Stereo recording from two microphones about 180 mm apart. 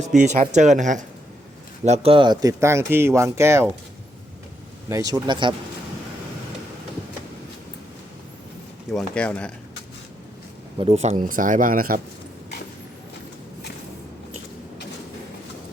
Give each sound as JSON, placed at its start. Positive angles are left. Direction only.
{"t": 0.2, "sound": "speech", "side_deg": -45}
{"t": 4.9, "sound": "speech", "side_deg": -20}
{"t": 8.9, "sound": "speech", "side_deg": 5}
{"t": 10.8, "sound": "speech", "side_deg": -35}